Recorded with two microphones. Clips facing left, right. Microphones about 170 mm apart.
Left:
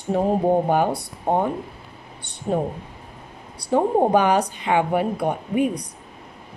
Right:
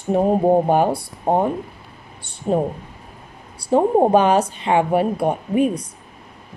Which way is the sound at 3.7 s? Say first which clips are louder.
Right 3 dB; 20° right (ahead or behind).